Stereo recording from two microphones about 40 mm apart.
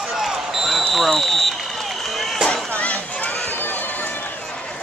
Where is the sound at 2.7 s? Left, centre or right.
Left.